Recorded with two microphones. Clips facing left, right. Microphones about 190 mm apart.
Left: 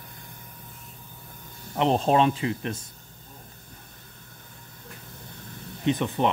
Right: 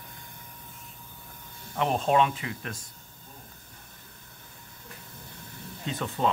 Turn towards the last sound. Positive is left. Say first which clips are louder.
# left 5 dB
turn(degrees=20)  # may be behind; listen again after turning